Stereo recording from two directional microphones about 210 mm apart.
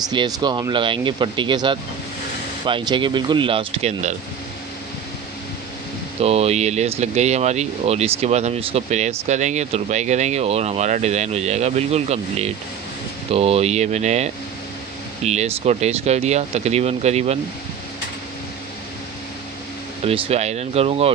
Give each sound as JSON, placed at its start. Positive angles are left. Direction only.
{"t": 0.1, "sound": "speech", "side_deg": -20}
{"t": 6.2, "sound": "speech", "side_deg": -30}
{"t": 20.1, "sound": "speech", "side_deg": -30}